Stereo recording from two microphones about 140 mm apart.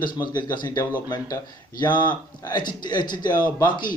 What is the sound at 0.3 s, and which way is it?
Speech, 30° left (ahead or behind).